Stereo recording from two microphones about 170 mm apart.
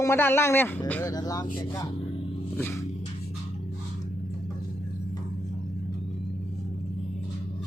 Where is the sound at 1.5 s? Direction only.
20° left (ahead or behind).